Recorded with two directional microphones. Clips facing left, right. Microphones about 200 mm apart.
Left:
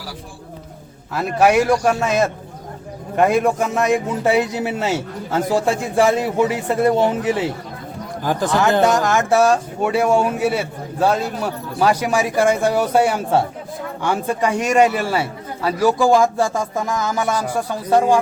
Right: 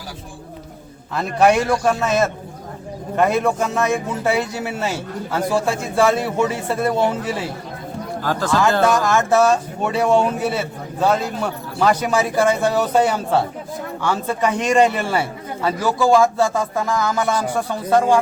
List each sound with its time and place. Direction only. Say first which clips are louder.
1.1 s speech: left 1 dB; 5° left (ahead or behind)